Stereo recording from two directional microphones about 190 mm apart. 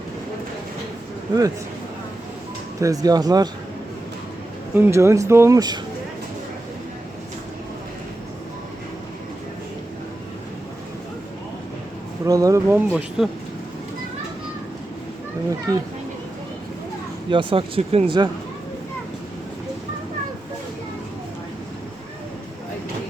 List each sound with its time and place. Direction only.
2.8 s speech: 20° right (ahead or behind)
4.7 s speech: 10° right (ahead or behind)
12.2 s speech: 20° right (ahead or behind)
13.2 s speech: centre (ahead or behind)
15.4 s speech: 20° right (ahead or behind)
17.2 s speech: 25° right (ahead or behind)